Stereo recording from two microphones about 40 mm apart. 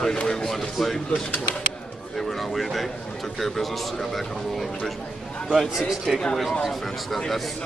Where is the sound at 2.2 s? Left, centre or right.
Centre.